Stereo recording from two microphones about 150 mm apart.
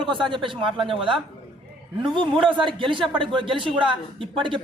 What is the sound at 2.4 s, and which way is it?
A man's voice, 35° right (ahead or behind).